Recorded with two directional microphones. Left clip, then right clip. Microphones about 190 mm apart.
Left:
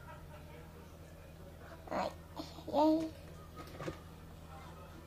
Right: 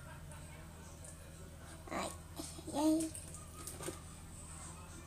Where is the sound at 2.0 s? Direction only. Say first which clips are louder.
Left 4 dB; 15° left (ahead or behind).